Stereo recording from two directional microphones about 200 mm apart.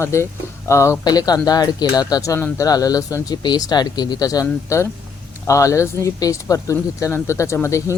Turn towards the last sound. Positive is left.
turn(degrees=15)  # may be behind; listen again after turning